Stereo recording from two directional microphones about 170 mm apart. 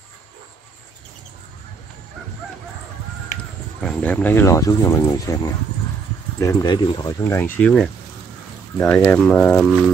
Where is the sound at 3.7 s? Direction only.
5° left (ahead or behind); by 7.1 s 25° left (ahead or behind).